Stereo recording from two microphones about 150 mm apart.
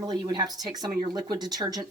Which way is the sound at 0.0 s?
25° right (ahead or behind).